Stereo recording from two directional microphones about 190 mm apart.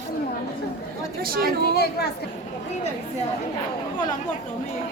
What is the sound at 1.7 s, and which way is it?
Speech, 55° left (ahead or behind).